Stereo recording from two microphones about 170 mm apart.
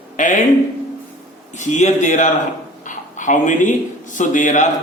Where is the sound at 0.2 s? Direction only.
50° left (ahead or behind).